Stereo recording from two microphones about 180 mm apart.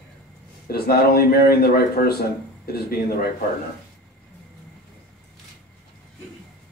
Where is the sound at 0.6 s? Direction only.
60° left (ahead or behind).